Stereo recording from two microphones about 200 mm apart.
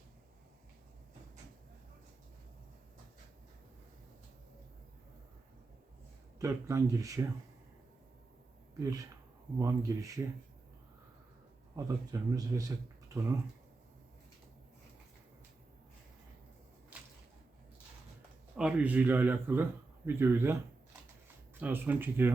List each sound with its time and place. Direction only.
6.4 s speech: 15° right (ahead or behind)
8.8 s speech: 15° right (ahead or behind)
11.9 s speech: 15° right (ahead or behind)
16.9 s whip: 5° right (ahead or behind)
18.5 s speech: 5° right (ahead or behind)
21.6 s speech: 10° right (ahead or behind)